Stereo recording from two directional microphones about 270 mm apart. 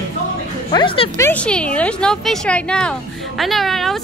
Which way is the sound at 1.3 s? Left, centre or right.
Centre.